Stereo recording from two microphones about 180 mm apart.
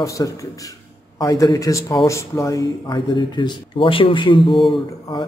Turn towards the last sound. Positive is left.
turn(degrees=25)  # may be behind; listen again after turning